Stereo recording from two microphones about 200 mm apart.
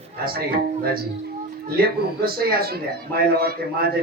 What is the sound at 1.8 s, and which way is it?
Speech, 50° right (ahead or behind).